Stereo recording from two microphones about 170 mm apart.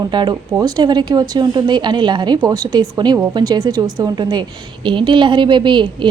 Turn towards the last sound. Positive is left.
turn(degrees=-25)  # may be behind; listen again after turning